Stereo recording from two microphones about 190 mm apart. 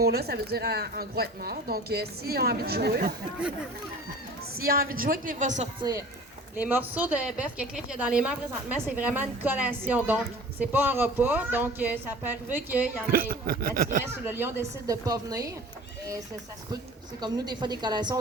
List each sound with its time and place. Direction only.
0.0 s a woman's voice: 55° right (ahead or behind)
4.6 s speech: 50° right (ahead or behind)
6.6 s a woman's voice: 10° right (ahead or behind)
13.1 s speech: 50° right (ahead or behind)
14.0 s a woman's voice: 10° right (ahead or behind)
17.2 s a woman's voice: 20° right (ahead or behind)